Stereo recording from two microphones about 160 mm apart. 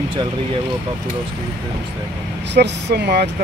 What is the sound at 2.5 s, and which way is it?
Speech, 90° right.